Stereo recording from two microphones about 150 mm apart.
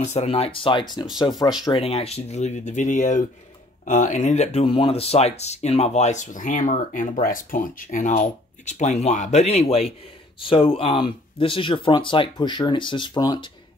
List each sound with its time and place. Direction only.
0.0 s speech: 50° left (ahead or behind); by 13.5 s 25° left (ahead or behind)